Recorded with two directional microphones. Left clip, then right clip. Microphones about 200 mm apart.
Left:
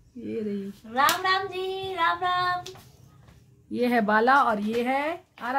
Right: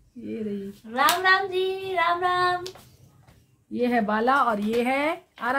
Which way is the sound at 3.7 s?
40° left (ahead or behind).